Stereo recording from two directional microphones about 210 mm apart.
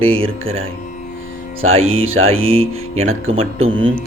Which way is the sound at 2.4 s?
30° right (ahead or behind).